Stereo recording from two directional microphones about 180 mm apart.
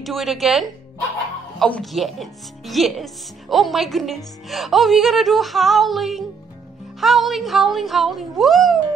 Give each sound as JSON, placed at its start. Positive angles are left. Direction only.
{"t": 0.0, "sound": "a woman's voice", "side_deg": 0}